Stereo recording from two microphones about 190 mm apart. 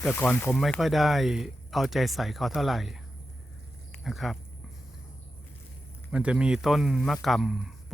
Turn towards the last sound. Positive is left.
turn(degrees=0)  # may be behind; listen again after turning